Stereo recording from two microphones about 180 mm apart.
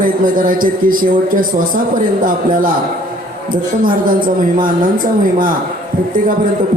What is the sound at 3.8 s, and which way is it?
A man's voice, 50° right (ahead or behind).